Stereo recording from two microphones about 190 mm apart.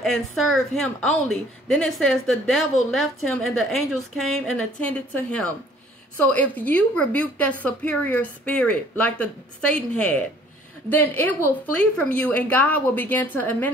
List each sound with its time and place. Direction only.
0.0 s a woman's voice: centre (ahead or behind)